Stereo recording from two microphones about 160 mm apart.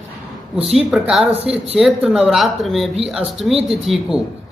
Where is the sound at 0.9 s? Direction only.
5° right (ahead or behind).